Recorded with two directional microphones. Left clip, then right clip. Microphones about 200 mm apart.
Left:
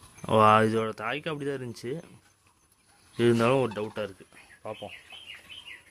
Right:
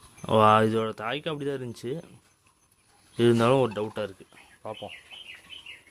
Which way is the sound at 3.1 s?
10° right (ahead or behind).